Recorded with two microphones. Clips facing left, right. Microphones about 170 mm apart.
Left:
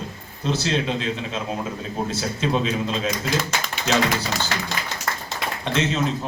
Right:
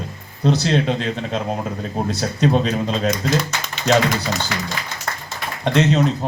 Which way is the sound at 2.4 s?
50° right (ahead or behind).